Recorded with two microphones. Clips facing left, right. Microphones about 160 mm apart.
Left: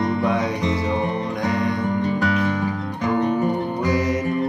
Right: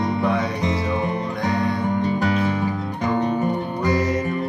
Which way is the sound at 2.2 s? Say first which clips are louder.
Even; 20° right (ahead or behind).